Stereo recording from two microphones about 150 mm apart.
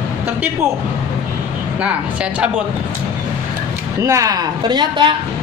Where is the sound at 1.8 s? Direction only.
10° right (ahead or behind).